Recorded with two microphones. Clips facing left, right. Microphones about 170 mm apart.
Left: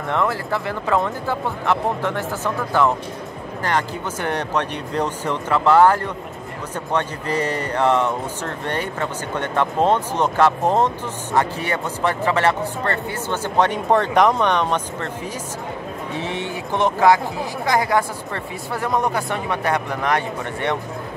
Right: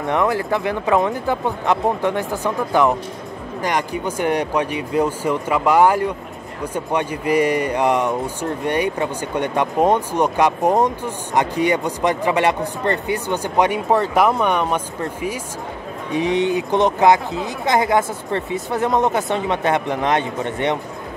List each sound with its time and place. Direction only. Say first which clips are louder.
0.0 s speech: right 3 dB; 15° right (ahead or behind)